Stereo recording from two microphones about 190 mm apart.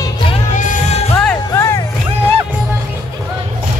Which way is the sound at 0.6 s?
40° left (ahead or behind).